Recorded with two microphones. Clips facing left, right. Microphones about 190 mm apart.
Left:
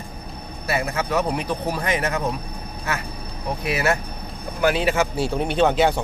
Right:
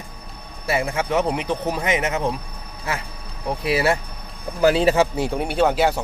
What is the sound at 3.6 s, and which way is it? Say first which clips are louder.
Speech: right 3 dB; 30° right (ahead or behind).